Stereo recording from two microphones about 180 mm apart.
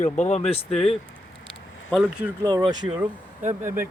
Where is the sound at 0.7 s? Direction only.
Centre (ahead or behind).